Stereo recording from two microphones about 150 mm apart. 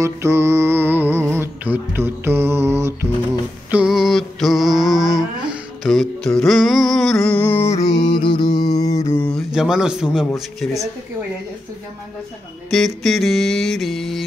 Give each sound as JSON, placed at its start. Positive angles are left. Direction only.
{"t": 0.0, "sound": "music", "side_deg": -20}
{"t": 3.7, "sound": "a sound", "side_deg": -5}
{"t": 9.3, "sound": "speech", "side_deg": -5}
{"t": 12.6, "sound": "mantra", "side_deg": 0}